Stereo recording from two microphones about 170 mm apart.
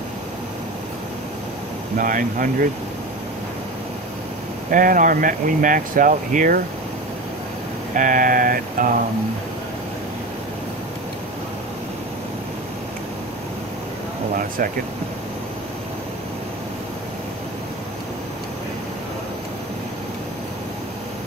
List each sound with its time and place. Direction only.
2.0 s speech: 50° right (ahead or behind)
4.6 s speech: 55° right (ahead or behind)
7.9 s speech: 50° right (ahead or behind)